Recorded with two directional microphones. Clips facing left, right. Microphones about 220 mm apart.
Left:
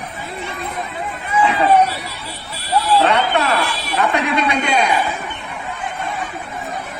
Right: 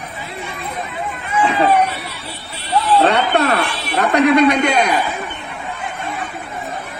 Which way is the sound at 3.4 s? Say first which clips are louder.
Right 2 dB; 60° right (ahead or behind).